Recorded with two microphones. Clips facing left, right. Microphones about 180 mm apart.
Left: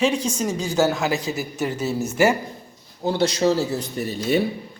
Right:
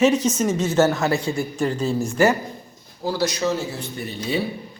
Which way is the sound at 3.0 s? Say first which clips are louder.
Left 3 dB; 30° left (ahead or behind).